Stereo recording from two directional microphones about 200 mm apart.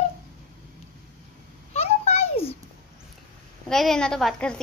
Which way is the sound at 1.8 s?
35° left (ahead or behind).